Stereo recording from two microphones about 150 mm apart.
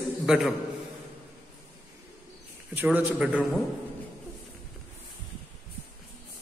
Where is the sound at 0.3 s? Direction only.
5° right (ahead or behind).